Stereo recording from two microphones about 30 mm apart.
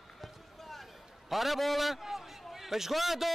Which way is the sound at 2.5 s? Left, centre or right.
Centre.